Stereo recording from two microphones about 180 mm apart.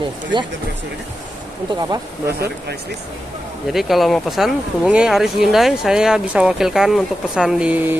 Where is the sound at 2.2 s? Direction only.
65° right (ahead or behind).